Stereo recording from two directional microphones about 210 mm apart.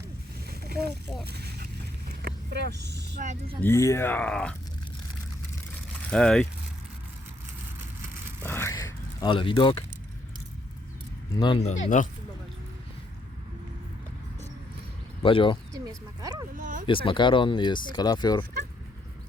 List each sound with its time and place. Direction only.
0.5 s a sound: 50° right (ahead or behind)
2.0 s vehicle: 50° right (ahead or behind)
3.2 s speech: 35° right (ahead or behind)
3.6 s speech: 15° left (ahead or behind)
6.1 s speech: 5° left (ahead or behind)
8.4 s a sound: 10° left (ahead or behind)
11.3 s speech: 25° left (ahead or behind)
11.7 s speech: 35° left (ahead or behind)
15.2 s speech: 25° left (ahead or behind)
15.7 s speech: 15° right (ahead or behind)
16.6 s speech: 40° right (ahead or behind)
16.8 s speech: 25° left (ahead or behind)